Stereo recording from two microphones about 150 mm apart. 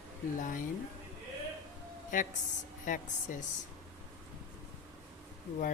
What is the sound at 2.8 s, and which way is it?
Speech, 60° left (ahead or behind).